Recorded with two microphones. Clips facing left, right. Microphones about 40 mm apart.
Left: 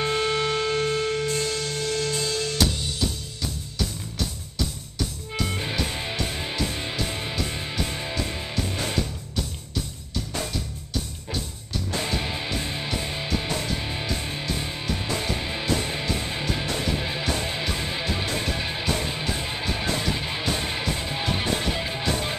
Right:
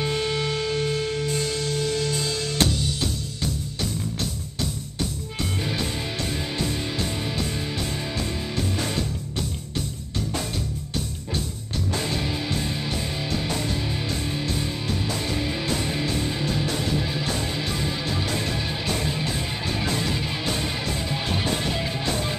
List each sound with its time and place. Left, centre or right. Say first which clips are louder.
0.0 s music: left 2 dB; centre
5.6 s music: right 1 dB; centre
11.9 s music: even; centre
18.2 s music: even; centre